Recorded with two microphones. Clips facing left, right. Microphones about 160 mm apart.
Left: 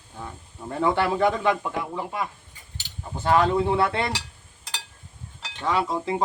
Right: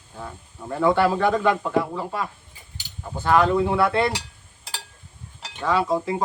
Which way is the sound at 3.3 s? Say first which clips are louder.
Right 1 dB; 25° left (ahead or behind).